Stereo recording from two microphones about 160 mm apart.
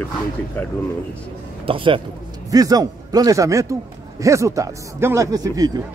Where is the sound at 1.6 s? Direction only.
30° right (ahead or behind).